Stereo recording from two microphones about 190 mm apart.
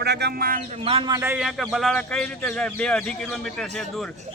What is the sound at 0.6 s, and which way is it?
Speech, 30° right (ahead or behind).